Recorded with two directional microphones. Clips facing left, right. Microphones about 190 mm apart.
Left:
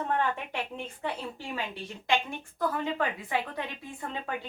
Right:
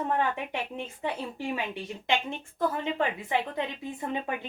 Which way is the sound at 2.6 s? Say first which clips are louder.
Right 1 dB; 25° right (ahead or behind).